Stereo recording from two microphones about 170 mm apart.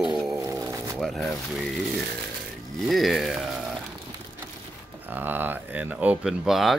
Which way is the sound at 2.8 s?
Centre (ahead or behind).